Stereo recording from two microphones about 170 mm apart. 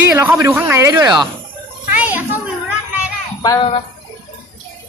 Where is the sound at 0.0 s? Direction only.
10° right (ahead or behind).